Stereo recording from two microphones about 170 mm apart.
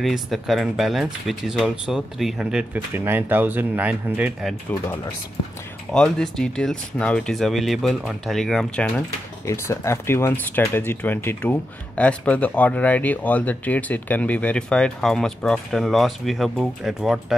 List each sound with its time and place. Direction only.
0.0 s speech: centre (ahead or behind)
5.9 s speech: 5° left (ahead or behind)
9.5 s speech: 15° left (ahead or behind); by 17.4 s centre (ahead or behind)